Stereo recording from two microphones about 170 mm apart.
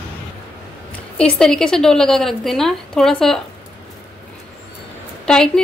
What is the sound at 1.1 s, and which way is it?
A woman's voice, 5° left (ahead or behind).